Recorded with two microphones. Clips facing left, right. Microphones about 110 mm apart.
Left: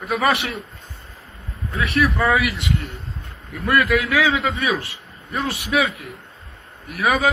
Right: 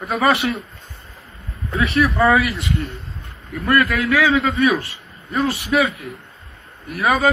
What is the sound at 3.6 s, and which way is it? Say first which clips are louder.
A man's voice: right 1 dB; centre (ahead or behind).